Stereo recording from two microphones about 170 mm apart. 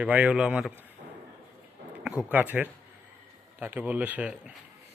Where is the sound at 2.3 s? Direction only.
10° right (ahead or behind).